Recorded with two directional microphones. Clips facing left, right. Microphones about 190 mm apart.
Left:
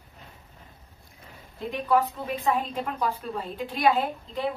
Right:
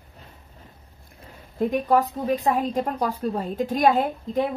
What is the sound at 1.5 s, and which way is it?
Speech, 40° right (ahead or behind).